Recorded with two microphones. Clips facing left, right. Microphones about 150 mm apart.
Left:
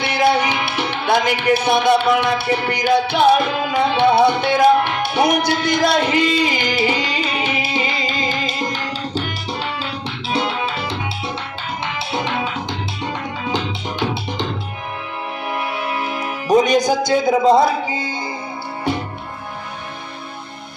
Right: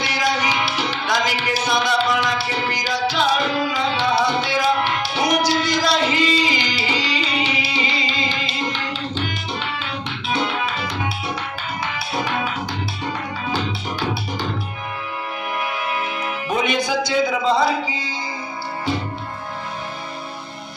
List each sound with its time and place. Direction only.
0.0 s music: 55° left (ahead or behind); by 9.8 s 35° left (ahead or behind)
11.9 s music: 25° left (ahead or behind)
16.5 s a man's voice: 40° left (ahead or behind)